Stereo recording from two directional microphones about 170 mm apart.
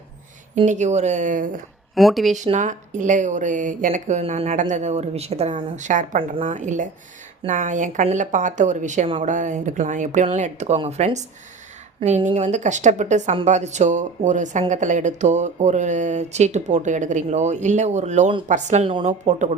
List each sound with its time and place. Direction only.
0.5 s speech: 45° right (ahead or behind)
2.0 s speech: centre (ahead or behind)
2.3 s a woman's voice: 45° right (ahead or behind)